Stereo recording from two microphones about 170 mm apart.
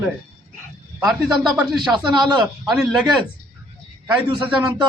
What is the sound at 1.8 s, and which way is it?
Speech, 25° right (ahead or behind).